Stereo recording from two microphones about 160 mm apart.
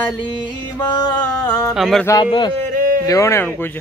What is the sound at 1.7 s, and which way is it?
Speech, centre (ahead or behind).